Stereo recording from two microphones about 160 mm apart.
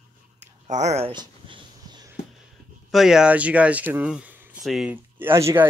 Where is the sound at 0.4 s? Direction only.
45° right (ahead or behind).